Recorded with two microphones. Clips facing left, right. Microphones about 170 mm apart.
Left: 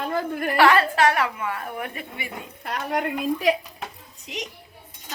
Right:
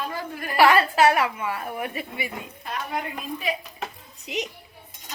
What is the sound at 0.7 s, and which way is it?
A woman's voice, 10° right (ahead or behind).